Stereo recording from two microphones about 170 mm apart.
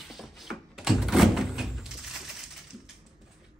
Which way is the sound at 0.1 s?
Centre (ahead or behind).